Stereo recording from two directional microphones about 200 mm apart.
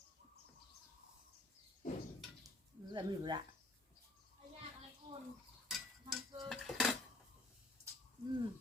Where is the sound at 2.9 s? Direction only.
20° right (ahead or behind).